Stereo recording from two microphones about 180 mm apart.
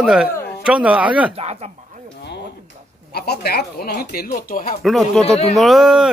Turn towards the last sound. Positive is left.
turn(degrees=0)  # may be behind; listen again after turning